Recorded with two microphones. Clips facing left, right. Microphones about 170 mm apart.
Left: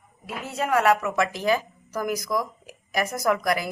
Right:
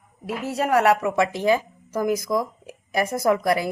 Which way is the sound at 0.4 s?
35° right (ahead or behind).